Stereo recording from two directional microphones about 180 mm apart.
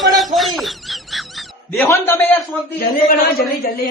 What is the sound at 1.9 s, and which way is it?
Speech, 15° left (ahead or behind).